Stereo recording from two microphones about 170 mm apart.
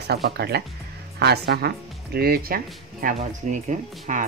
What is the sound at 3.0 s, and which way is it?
Speech, 45° right (ahead or behind).